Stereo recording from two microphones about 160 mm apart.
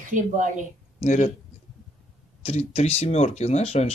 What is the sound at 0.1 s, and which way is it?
Speech, 55° right (ahead or behind).